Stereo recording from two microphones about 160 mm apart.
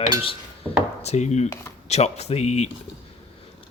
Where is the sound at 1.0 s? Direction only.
45° left (ahead or behind).